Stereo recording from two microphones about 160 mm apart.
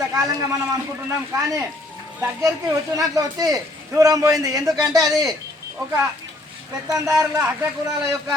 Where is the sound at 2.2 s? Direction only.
20° right (ahead or behind).